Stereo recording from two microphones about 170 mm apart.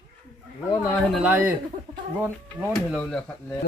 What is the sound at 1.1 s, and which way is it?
Speech, 10° right (ahead or behind).